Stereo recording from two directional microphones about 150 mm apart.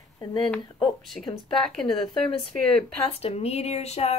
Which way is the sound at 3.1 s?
40° left (ahead or behind).